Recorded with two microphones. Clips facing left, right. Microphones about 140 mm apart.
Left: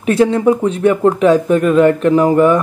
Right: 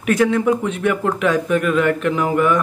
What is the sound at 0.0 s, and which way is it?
Speech, 30° left (ahead or behind).